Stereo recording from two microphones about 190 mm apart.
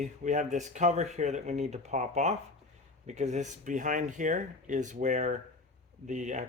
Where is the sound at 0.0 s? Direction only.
40° right (ahead or behind).